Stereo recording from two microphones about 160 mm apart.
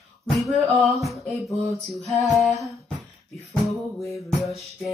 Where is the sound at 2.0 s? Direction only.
Centre (ahead or behind).